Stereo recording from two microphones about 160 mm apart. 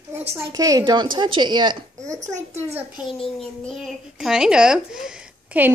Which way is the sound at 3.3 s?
Centre (ahead or behind).